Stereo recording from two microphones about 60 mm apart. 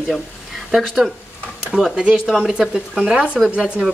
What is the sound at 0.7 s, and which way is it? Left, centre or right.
Speech, centre.